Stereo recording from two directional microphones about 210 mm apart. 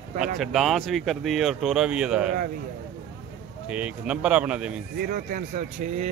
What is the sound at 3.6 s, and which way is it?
Speech, 5° right (ahead or behind).